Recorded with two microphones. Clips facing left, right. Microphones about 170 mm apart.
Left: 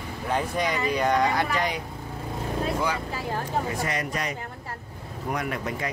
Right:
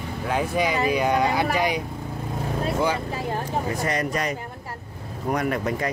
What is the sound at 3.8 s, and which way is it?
Speech, 40° right (ahead or behind).